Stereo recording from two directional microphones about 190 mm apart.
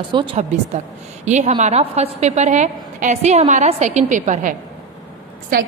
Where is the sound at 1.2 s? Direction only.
35° right (ahead or behind).